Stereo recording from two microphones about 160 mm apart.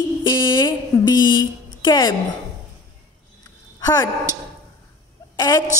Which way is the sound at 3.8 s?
25° left (ahead or behind).